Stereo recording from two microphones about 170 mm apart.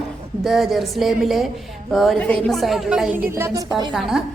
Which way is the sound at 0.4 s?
Centre (ahead or behind).